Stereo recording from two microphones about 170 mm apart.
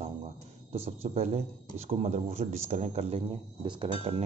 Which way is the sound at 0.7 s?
35° right (ahead or behind).